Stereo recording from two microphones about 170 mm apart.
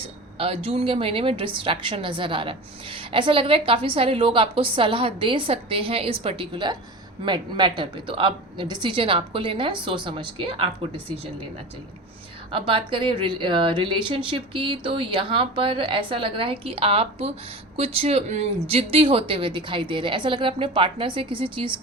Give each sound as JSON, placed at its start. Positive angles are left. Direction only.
{"t": 0.3, "sound": "a woman's voice", "side_deg": -35}
{"t": 12.5, "sound": "a woman's voice", "side_deg": -30}